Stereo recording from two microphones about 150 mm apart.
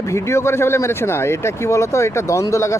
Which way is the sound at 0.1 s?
20° left (ahead or behind).